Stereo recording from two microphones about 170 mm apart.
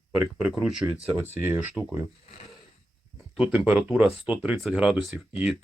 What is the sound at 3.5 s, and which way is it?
Speech, 5° right (ahead or behind).